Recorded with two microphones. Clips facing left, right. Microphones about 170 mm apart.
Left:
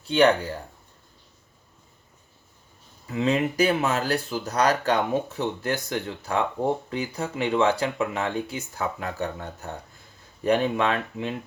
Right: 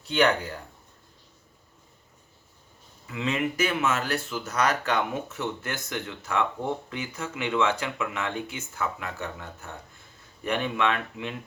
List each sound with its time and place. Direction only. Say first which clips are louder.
3.1 s speech: left 5 dB; 35° left (ahead or behind)